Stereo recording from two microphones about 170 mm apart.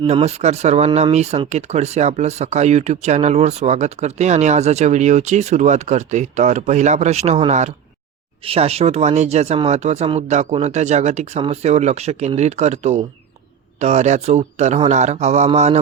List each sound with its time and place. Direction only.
0.0 s speech: 40° right (ahead or behind)